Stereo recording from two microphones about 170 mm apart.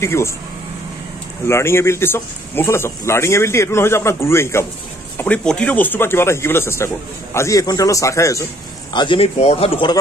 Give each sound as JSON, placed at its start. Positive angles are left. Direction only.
{"t": 0.0, "sound": "speech", "side_deg": 15}
{"t": 1.5, "sound": "a man's voice", "side_deg": 15}
{"t": 8.9, "sound": "speech", "side_deg": 30}